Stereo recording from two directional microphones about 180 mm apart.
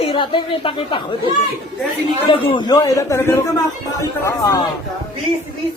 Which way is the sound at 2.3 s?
30° left (ahead or behind).